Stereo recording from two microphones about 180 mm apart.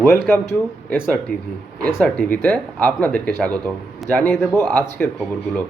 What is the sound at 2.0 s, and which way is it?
Speech, 10° left (ahead or behind).